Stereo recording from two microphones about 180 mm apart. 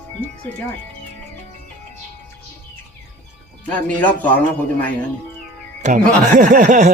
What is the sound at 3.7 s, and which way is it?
Speech, 10° left (ahead or behind).